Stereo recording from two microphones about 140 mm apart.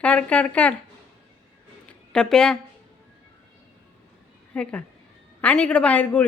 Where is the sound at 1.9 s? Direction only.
5° left (ahead or behind).